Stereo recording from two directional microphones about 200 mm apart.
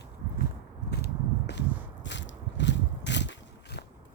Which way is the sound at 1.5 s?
60° left (ahead or behind).